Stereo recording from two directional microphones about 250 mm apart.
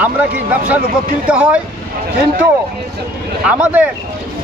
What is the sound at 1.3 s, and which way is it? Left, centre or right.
Speech, centre.